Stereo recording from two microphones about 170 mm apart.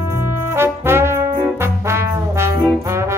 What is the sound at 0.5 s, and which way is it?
Brass instrument, 15° right (ahead or behind).